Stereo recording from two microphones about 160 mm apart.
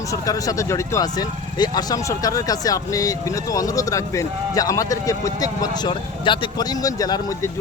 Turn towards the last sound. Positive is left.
turn(degrees=25)  # may be behind; listen again after turning